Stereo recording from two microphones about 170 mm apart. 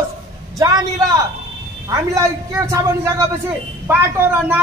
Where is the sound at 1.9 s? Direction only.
20° right (ahead or behind).